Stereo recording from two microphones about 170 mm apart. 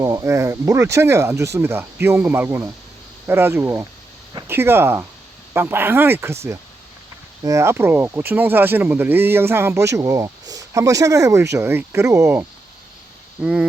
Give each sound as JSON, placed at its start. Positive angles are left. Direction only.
{"t": 0.0, "sound": "speech", "side_deg": -20}
{"t": 13.4, "sound": "speech", "side_deg": -5}